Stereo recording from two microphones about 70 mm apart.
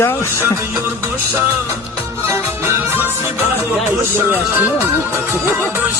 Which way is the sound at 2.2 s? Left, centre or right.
Right.